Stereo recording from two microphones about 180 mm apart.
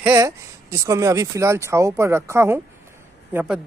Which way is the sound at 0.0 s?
15° right (ahead or behind).